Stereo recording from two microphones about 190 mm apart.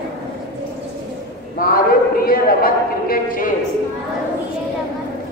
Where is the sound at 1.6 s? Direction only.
50° left (ahead or behind).